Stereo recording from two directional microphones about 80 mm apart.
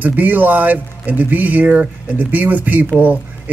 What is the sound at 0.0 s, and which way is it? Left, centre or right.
Speech, right.